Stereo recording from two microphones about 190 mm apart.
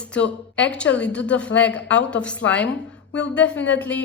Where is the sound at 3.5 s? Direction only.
70° left (ahead or behind).